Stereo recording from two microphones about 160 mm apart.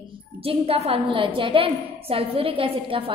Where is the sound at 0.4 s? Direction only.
35° right (ahead or behind).